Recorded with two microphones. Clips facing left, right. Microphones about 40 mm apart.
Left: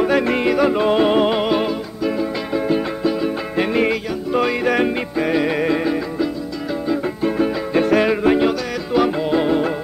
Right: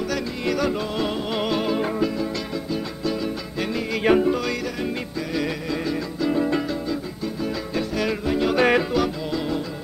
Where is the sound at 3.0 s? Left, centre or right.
Left.